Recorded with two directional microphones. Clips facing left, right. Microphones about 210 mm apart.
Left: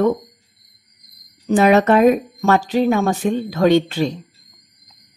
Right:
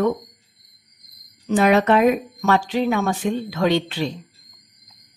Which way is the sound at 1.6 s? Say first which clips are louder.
Left 3 dB; 45° left (ahead or behind).